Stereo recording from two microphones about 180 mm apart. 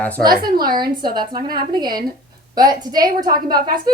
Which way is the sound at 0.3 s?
55° right (ahead or behind).